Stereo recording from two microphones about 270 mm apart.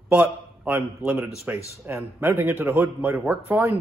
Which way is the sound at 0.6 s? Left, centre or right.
Centre.